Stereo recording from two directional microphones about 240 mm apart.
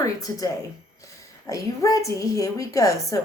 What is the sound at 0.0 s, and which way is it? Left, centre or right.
A woman's voice, centre.